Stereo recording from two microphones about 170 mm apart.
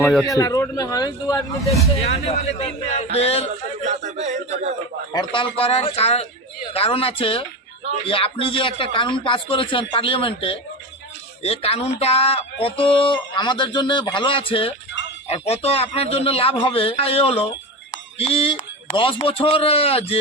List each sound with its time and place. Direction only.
0.3 s speech: 20° left (ahead or behind)
2.0 s speech: 35° left (ahead or behind)
3.8 s speech: 45° right (ahead or behind)
5.1 s speech: 30° left (ahead or behind)